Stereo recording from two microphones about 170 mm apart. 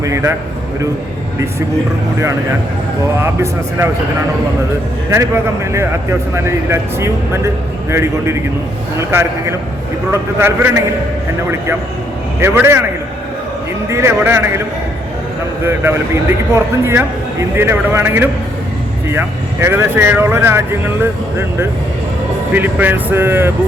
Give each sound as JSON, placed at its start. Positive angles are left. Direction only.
{"t": 0.0, "sound": "speech", "side_deg": -20}
{"t": 3.2, "sound": "speech", "side_deg": -15}
{"t": 5.1, "sound": "speech", "side_deg": -15}
{"t": 12.4, "sound": "speech", "side_deg": -15}
{"t": 13.9, "sound": "speech", "side_deg": -15}
{"t": 15.6, "sound": "speech", "side_deg": -15}